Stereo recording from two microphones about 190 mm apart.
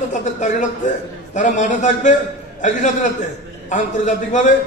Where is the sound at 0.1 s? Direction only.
40° left (ahead or behind).